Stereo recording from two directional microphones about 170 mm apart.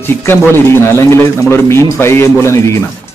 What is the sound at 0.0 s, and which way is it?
Speech, 15° left (ahead or behind).